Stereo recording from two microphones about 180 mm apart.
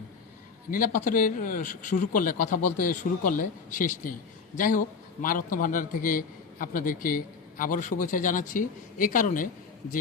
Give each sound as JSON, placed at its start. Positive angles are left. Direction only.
{"t": 0.7, "sound": "speech", "side_deg": 50}